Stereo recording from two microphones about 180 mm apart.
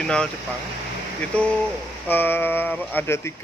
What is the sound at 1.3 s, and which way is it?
Speech, 5° left (ahead or behind).